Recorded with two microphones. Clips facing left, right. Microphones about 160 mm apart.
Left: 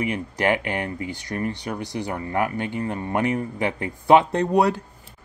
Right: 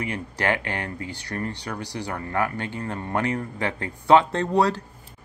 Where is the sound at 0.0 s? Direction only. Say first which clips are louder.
Left 4 dB; 15° left (ahead or behind).